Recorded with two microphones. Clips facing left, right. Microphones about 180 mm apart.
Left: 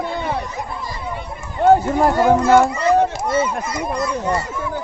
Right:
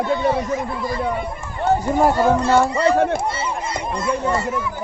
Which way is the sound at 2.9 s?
60° right (ahead or behind).